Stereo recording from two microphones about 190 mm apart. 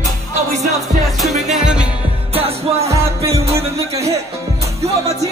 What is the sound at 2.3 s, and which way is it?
Music, 30° right (ahead or behind).